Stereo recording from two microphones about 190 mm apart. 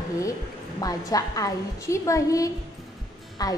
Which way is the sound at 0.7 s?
20° left (ahead or behind).